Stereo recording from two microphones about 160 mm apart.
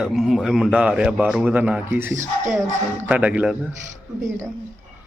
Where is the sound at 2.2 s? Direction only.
50° right (ahead or behind).